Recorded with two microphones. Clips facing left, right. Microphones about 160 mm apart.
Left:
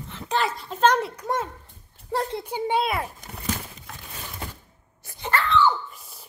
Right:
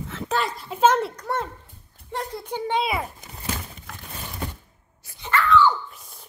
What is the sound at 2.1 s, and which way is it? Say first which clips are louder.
Speech: left 4 dB; 35° left (ahead or behind).